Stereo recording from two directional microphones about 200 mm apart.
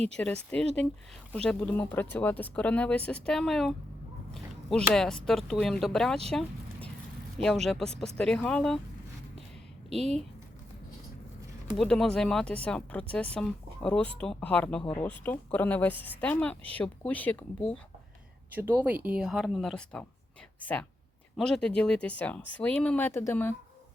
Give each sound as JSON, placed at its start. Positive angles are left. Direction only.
{"t": 0.2, "sound": "speech", "side_deg": 5}
{"t": 6.3, "sound": "a sound", "side_deg": 5}
{"t": 7.4, "sound": "speech", "side_deg": 0}
{"t": 9.9, "sound": "speech", "side_deg": 0}
{"t": 11.8, "sound": "speech", "side_deg": 0}
{"t": 18.5, "sound": "speech", "side_deg": -10}